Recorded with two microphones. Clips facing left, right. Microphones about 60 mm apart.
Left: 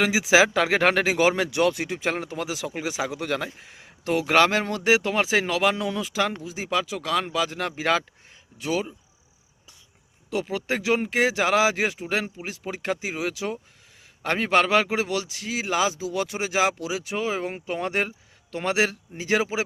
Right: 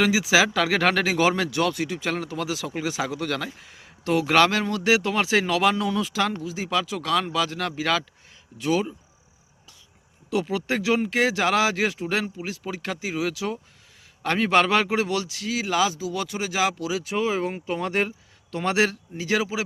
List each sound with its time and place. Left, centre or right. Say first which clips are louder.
0.0 s speech: left 1 dB; left
10.2 s speech: right 2 dB; centre; by 19.6 s left